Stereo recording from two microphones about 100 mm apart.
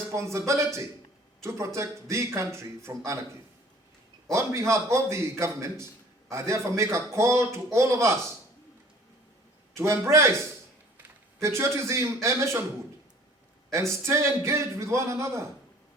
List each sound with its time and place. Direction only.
0.1 s a man's voice: 30° right (ahead or behind)
4.3 s a man's voice: 30° right (ahead or behind)
9.7 s a man's voice: 30° right (ahead or behind)
14.0 s a man's voice: 25° right (ahead or behind)